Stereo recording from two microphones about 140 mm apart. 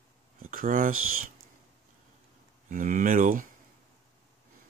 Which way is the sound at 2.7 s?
75° right (ahead or behind).